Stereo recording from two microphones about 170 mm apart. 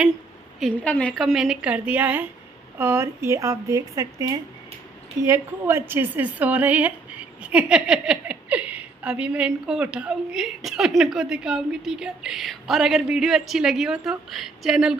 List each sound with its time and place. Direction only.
0.6 s a woman's voice: 5° left (ahead or behind)